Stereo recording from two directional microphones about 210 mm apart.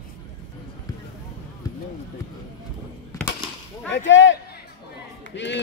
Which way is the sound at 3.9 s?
60° left (ahead or behind).